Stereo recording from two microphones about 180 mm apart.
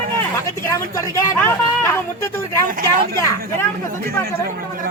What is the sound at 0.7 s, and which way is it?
Speech, 15° left (ahead or behind).